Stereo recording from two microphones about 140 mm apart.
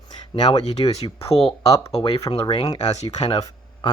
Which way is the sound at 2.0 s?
30° left (ahead or behind).